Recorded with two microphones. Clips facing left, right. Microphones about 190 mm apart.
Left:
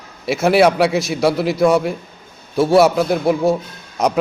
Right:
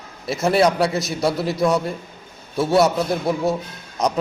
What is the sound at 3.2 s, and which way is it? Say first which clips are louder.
Speech: left 6 dB; 30° left (ahead or behind).